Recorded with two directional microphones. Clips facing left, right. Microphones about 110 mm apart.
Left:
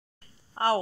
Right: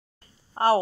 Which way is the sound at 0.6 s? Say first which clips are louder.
Right 4 dB; 25° right (ahead or behind).